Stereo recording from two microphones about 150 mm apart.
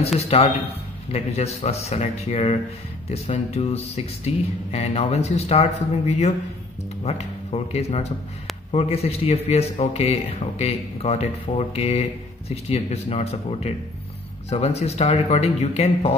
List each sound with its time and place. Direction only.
0.3 s speech: 45° left (ahead or behind)